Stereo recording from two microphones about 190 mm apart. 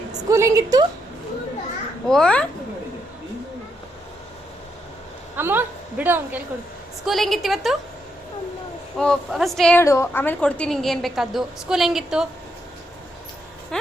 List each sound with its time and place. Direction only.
0.3 s a woman's voice: 15° right (ahead or behind)
2.0 s a woman's voice: 5° left (ahead or behind)
5.4 s a woman's voice: 10° right (ahead or behind)
7.0 s a woman's voice: centre (ahead or behind)
9.0 s a woman's voice: centre (ahead or behind)
9.8 s a woman's voice: 15° left (ahead or behind); by 12.3 s centre (ahead or behind)